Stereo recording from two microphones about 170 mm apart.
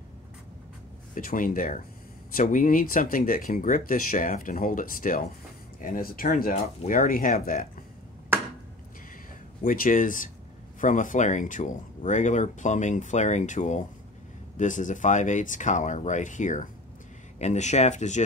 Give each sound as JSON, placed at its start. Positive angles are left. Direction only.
{"t": 1.1, "sound": "speech", "side_deg": 50}
{"t": 9.6, "sound": "speech", "side_deg": 55}